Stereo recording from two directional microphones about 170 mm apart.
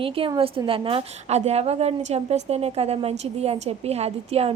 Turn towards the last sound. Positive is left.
turn(degrees=-35)  # may be behind; listen again after turning